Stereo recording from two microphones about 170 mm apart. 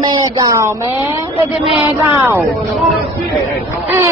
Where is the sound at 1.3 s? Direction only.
35° left (ahead or behind).